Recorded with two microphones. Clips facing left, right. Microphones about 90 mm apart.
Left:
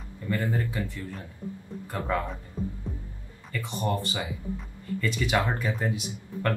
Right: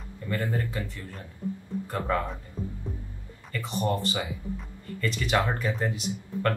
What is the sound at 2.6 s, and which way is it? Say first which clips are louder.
Music: left 3 dB; 10° right (ahead or behind).